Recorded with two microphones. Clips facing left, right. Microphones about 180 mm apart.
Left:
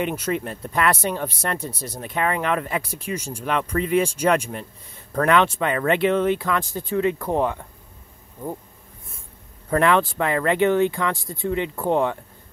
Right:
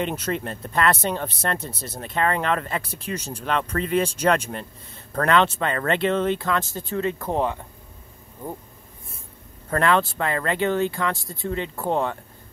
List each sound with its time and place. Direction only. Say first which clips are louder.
0.0 s speech: left 2 dB; 10° left (ahead or behind)
9.7 s speech: left 2 dB; 15° left (ahead or behind)